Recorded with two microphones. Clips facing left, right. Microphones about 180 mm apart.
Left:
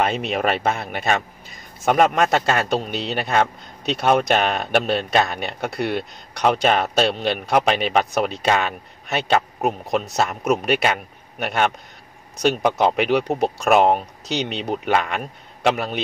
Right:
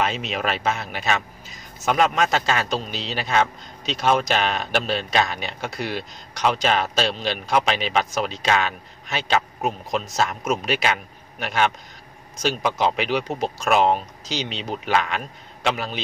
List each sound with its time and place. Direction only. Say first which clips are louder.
0.0 s a man's voice: left 4 dB; 55° left (ahead or behind)